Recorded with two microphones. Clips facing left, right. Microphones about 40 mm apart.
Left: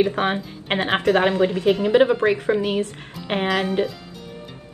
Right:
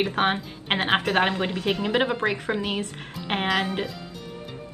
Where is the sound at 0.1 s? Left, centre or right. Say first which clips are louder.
Left 1 dB; right.